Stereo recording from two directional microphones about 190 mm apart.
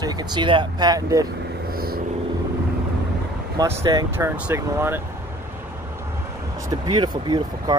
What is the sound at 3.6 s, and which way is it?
Speech, 15° right (ahead or behind).